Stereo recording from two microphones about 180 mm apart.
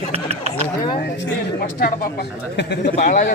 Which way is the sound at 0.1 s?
35° right (ahead or behind).